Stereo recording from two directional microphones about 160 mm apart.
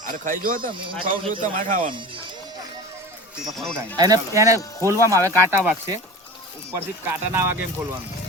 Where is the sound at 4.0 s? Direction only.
25° right (ahead or behind).